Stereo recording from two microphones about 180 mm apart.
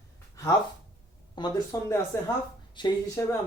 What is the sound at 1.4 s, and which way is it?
Speech, 25° left (ahead or behind).